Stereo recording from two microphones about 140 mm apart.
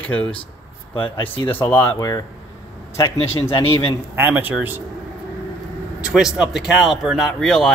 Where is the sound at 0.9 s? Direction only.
40° left (ahead or behind).